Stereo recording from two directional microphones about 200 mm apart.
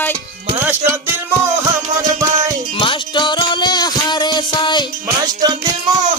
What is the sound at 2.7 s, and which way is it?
Music, 25° left (ahead or behind).